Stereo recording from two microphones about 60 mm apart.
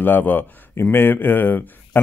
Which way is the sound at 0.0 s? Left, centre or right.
Left.